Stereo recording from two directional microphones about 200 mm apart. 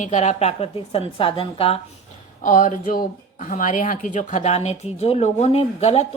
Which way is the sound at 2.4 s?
40° left (ahead or behind).